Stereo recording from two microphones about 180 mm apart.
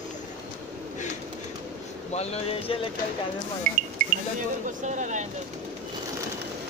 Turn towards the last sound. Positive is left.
turn(degrees=-40)  # may be behind; listen again after turning